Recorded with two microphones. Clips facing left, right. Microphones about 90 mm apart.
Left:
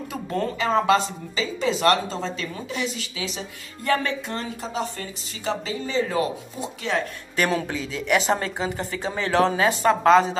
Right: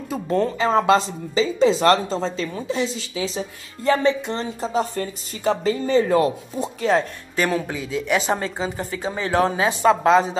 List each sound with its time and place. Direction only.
0.1 s speech: 30° right (ahead or behind)
4.6 s speech: 40° right (ahead or behind)
7.5 s a woman's voice: 15° right (ahead or behind)